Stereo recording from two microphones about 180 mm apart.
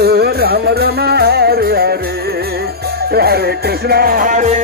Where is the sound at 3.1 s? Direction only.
60° right (ahead or behind); by 4.6 s 40° right (ahead or behind).